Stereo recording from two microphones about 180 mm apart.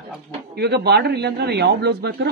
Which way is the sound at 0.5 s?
65° right (ahead or behind).